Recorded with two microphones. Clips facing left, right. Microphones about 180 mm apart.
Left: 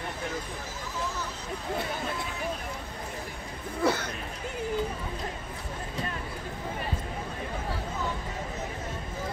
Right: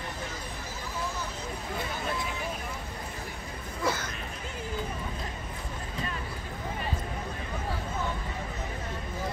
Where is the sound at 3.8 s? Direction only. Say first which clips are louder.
Left 4 dB; 65° left (ahead or behind).